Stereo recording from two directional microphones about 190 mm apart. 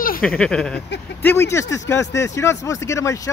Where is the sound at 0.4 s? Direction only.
5° left (ahead or behind).